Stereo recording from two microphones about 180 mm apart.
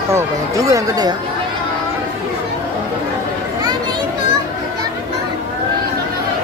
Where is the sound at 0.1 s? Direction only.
20° right (ahead or behind).